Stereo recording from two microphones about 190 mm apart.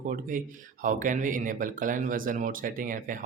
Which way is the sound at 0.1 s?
45° right (ahead or behind).